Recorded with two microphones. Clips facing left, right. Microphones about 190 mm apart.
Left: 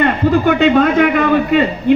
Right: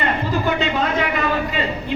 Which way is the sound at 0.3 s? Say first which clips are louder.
Left 12 dB; 60° left (ahead or behind).